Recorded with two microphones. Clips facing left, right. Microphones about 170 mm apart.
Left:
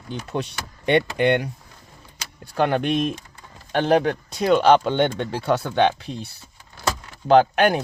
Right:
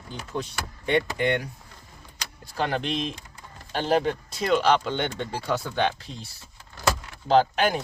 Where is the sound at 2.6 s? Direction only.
55° left (ahead or behind).